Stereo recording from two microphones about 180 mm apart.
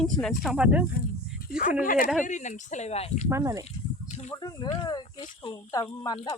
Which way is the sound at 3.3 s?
20° right (ahead or behind).